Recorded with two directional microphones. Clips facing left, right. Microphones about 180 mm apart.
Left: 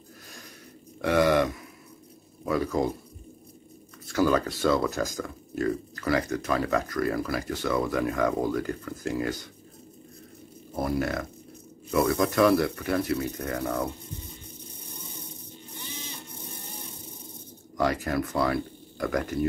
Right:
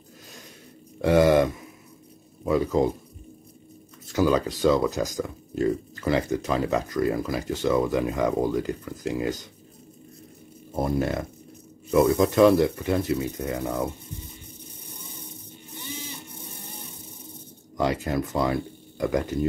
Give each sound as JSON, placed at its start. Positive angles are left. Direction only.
{"t": 1.0, "sound": "speech", "side_deg": -25}
{"t": 4.1, "sound": "speech", "side_deg": -15}
{"t": 10.8, "sound": "speech", "side_deg": -20}
{"t": 17.7, "sound": "speech", "side_deg": -20}